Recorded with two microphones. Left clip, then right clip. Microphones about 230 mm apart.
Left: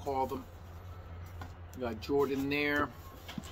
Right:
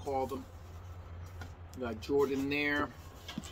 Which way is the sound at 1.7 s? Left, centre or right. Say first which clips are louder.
Even; centre.